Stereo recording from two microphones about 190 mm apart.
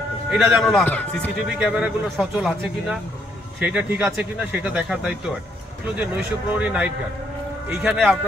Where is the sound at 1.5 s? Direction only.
5° right (ahead or behind).